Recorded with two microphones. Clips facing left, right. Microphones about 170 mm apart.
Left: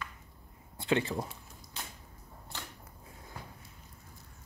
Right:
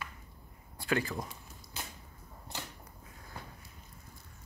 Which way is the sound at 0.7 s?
25° left (ahead or behind).